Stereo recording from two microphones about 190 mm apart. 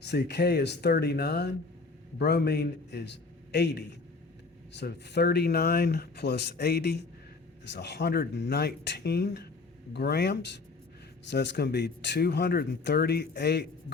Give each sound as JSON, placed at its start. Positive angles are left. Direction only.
{"t": 0.0, "sound": "speech", "side_deg": 60}